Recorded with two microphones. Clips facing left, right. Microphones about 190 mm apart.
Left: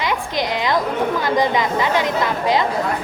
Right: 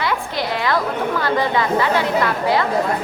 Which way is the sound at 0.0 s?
15° left (ahead or behind).